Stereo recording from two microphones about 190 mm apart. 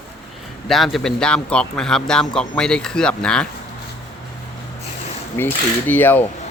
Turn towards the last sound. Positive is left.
turn(degrees=10)  # may be behind; listen again after turning